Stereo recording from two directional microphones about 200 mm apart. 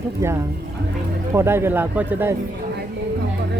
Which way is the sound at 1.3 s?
10° right (ahead or behind).